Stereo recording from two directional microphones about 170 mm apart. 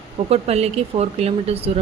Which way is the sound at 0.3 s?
35° right (ahead or behind).